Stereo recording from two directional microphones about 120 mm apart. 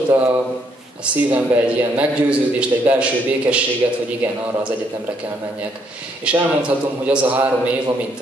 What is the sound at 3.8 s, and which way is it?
Speech, 25° right (ahead or behind).